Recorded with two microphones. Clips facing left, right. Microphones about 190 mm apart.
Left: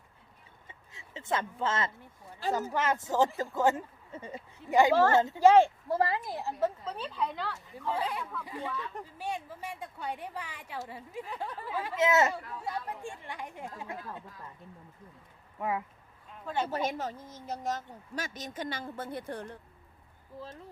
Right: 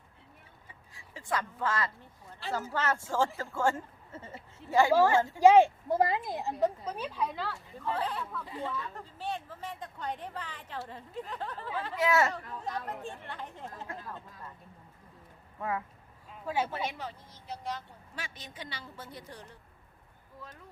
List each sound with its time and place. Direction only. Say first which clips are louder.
0.7 s a sound: left 3 dB; 20° left (ahead or behind)
2.5 s speech: left 2 dB; 15° left (ahead or behind)
5.4 s a woman's voice: right 2 dB; 15° right (ahead or behind); by 11.9 s 10° left (ahead or behind)
11.9 s speech: left 2 dB; 20° left (ahead or behind)
12.3 s speech: left 1 dB; 10° left (ahead or behind)
16.3 s a sound: right 1 dB; 10° right (ahead or behind)
16.6 s speech: left 4 dB; 40° left (ahead or behind)